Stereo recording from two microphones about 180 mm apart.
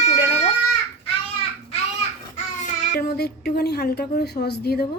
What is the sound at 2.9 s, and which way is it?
A woman's voice, 65° left (ahead or behind).